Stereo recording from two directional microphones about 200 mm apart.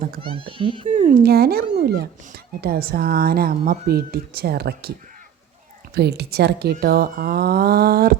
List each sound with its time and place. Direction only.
0.2 s speech: 25° right (ahead or behind)
0.9 s speech: 40° right (ahead or behind)